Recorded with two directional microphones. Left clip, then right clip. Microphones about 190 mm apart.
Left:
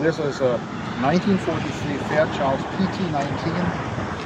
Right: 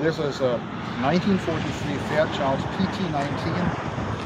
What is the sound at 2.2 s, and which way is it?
Speech, 15° left (ahead or behind).